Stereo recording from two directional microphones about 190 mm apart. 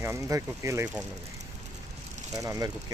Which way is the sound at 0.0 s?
15° right (ahead or behind).